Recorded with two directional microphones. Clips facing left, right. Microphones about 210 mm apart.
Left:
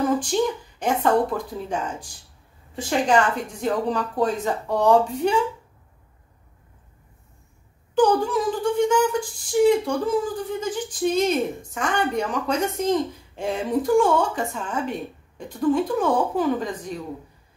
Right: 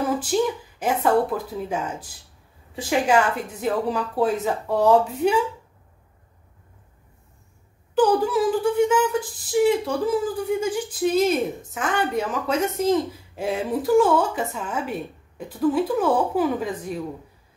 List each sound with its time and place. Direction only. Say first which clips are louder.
0.0 s a woman's voice: left 1 dB; 5° right (ahead or behind)
7.9 s speech: even; 5° right (ahead or behind)